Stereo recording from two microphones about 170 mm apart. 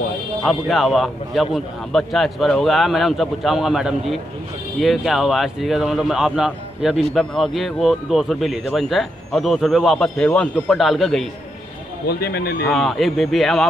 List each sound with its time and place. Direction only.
0.4 s speech: centre (ahead or behind)
12.1 s speech: 70° left (ahead or behind)
12.6 s speech: centre (ahead or behind)